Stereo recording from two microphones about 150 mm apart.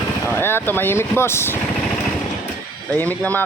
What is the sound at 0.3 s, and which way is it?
Speech, 15° left (ahead or behind).